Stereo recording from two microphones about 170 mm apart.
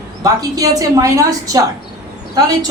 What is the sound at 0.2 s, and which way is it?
A man's voice, 20° right (ahead or behind).